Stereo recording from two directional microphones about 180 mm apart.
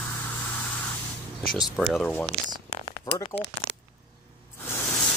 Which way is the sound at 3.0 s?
20° left (ahead or behind).